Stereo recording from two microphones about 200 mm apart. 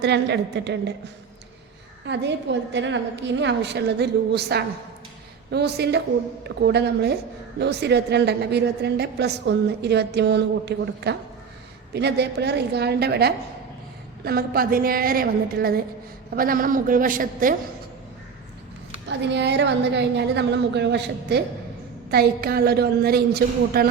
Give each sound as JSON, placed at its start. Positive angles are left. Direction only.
{"t": 0.0, "sound": "a woman's voice", "side_deg": -60}
{"t": 2.0, "sound": "a woman's voice", "side_deg": -60}
{"t": 19.0, "sound": "a woman's voice", "side_deg": -60}